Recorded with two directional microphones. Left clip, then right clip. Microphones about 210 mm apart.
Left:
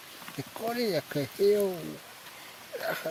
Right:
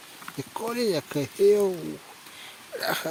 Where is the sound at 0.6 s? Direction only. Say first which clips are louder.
Right 3 dB; 15° right (ahead or behind).